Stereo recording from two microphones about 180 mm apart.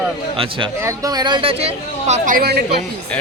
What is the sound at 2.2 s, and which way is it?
Speech, 55° right (ahead or behind).